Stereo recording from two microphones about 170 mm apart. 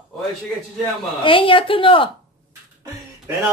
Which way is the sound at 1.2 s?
30° left (ahead or behind).